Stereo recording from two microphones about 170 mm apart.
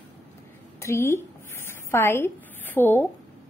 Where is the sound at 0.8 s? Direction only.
15° left (ahead or behind).